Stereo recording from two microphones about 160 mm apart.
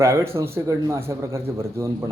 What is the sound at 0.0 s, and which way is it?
A man's voice, 15° right (ahead or behind).